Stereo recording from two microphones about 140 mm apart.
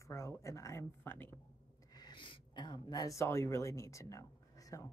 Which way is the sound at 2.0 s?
35° left (ahead or behind).